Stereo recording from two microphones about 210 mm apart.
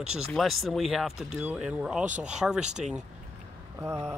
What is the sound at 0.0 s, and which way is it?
Speech, 90° right.